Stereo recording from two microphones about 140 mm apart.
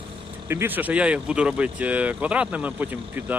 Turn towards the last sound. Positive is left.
turn(degrees=-15)  # may be behind; listen again after turning